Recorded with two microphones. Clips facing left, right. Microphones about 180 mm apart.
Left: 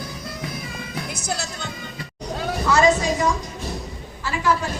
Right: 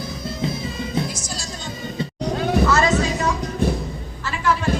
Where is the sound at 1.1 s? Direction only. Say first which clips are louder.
Left 4 dB; 60° left (ahead or behind).